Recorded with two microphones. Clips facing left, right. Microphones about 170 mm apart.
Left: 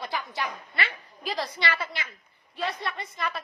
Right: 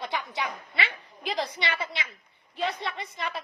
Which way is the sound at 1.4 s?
20° right (ahead or behind).